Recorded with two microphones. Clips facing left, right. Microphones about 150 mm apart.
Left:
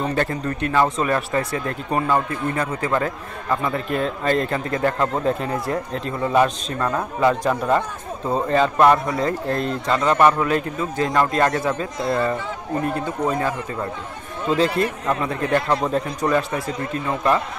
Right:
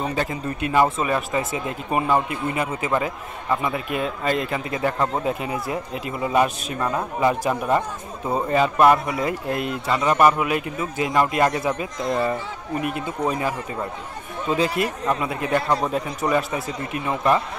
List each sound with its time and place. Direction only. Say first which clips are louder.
0.1 s speech: left 3 dB; 10° right (ahead or behind)